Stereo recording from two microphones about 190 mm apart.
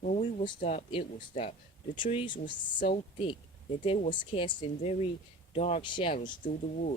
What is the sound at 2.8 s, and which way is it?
Speech, 45° left (ahead or behind).